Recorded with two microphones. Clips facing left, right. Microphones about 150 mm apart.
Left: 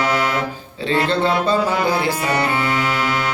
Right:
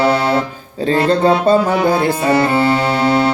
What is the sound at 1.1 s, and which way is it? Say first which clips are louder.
Speech: right 8 dB; 45° right (ahead or behind).